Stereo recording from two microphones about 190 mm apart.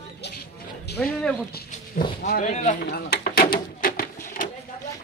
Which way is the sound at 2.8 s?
55° left (ahead or behind).